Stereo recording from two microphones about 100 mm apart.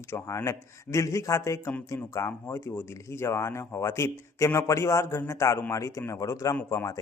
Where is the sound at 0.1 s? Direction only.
30° left (ahead or behind).